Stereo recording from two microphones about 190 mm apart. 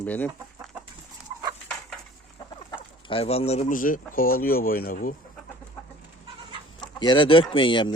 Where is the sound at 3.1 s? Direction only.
30° left (ahead or behind); by 5.1 s 50° left (ahead or behind).